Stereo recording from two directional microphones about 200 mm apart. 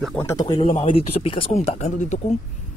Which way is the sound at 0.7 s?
30° left (ahead or behind).